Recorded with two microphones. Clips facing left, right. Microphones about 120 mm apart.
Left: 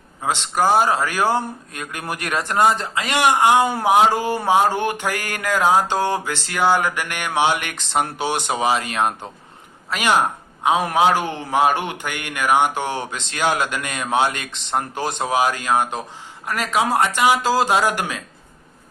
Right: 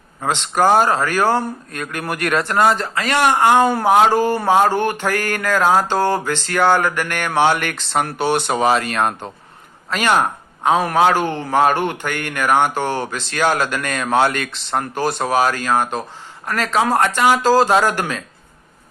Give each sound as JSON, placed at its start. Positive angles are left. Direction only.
{"t": 0.2, "sound": "a man's voice", "side_deg": 10}